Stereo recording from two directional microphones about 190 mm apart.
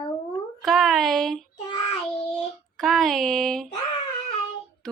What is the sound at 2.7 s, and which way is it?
Speech, centre (ahead or behind).